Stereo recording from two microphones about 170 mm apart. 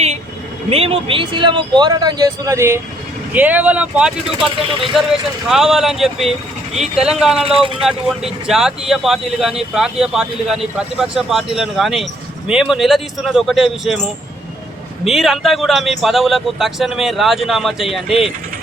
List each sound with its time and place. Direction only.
0.7 s speech: 35° right (ahead or behind); by 7.4 s 5° right (ahead or behind)
7.4 s speech: 30° right (ahead or behind)
7.9 s speech: centre (ahead or behind)
15.0 s speech: centre (ahead or behind)